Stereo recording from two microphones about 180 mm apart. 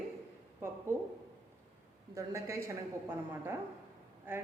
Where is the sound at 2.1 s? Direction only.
15° right (ahead or behind).